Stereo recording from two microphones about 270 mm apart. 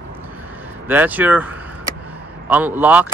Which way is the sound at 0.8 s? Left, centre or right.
Centre.